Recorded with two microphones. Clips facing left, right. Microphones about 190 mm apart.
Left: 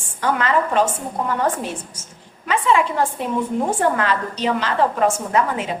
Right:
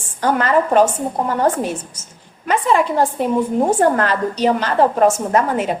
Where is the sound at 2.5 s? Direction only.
45° right (ahead or behind).